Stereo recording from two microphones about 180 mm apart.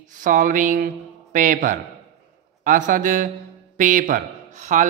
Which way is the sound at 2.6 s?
45° right (ahead or behind).